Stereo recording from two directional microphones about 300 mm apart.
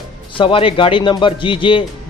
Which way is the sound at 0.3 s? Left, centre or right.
Centre.